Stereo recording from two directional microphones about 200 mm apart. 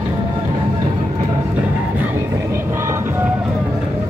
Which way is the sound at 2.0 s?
10° right (ahead or behind).